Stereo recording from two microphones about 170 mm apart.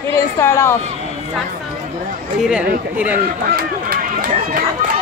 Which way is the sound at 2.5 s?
5° right (ahead or behind).